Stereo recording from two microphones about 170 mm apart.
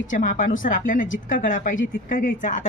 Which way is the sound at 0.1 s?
50° left (ahead or behind).